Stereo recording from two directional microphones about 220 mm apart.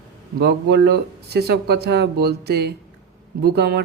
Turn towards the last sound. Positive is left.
turn(degrees=-45)  # may be behind; listen again after turning